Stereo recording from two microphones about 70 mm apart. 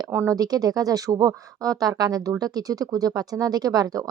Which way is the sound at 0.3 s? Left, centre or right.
Right.